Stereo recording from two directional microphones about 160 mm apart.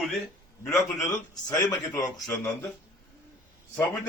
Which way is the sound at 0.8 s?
20° left (ahead or behind).